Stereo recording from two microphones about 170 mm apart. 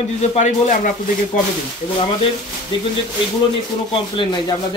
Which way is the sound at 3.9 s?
30° left (ahead or behind).